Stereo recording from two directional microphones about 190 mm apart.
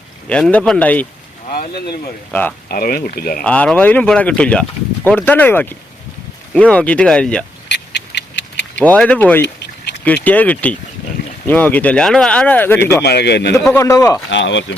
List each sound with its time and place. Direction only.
0.3 s speech: 5° left (ahead or behind)
1.5 s speech: 45° left (ahead or behind)
2.3 s speech: 10° left (ahead or behind)
2.6 s speech: 50° left (ahead or behind)
3.4 s speech: 5° left (ahead or behind)
7.7 s a sound: 65° left (ahead or behind)
8.8 s speech: 5° left (ahead or behind)
9.6 s a sound: 65° left (ahead or behind)
10.2 s speech: 10° left (ahead or behind)
13.0 s a man's voice: 60° left (ahead or behind)
13.7 s speech: 15° left (ahead or behind)
14.3 s speech: 70° left (ahead or behind)